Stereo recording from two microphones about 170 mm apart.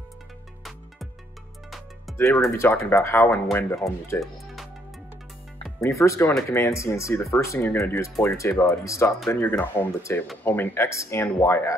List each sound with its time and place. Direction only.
2.1 s music: centre (ahead or behind)
2.5 s speech: 15° left (ahead or behind)
3.5 s speech: centre (ahead or behind)
4.1 s speech: 15° left (ahead or behind)
5.8 s speech: 15° left (ahead or behind)